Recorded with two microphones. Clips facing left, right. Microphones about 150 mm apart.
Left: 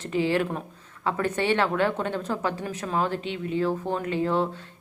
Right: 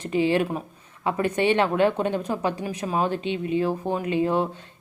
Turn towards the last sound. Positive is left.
turn(degrees=-15)  # may be behind; listen again after turning